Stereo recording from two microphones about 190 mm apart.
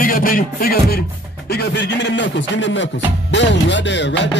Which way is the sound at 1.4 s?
60° left (ahead or behind).